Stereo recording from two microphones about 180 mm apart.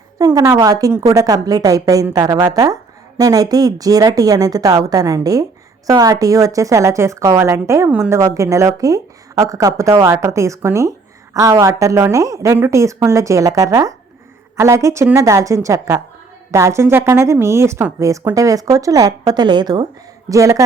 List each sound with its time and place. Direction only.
0.2 s a woman's voice: 20° right (ahead or behind)